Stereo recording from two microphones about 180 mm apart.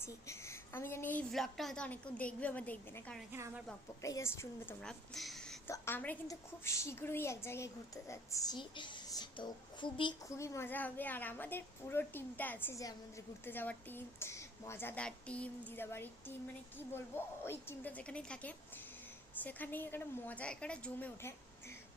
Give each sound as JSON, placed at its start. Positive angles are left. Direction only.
{"t": 0.0, "sound": "a woman's voice", "side_deg": 15}
{"t": 1.3, "sound": "a woman's voice", "side_deg": 0}
{"t": 3.3, "sound": "a woman's voice", "side_deg": -15}
{"t": 4.0, "sound": "a woman's voice", "side_deg": 15}
{"t": 4.8, "sound": "speech", "side_deg": 5}
{"t": 5.6, "sound": "a woman's voice", "side_deg": 15}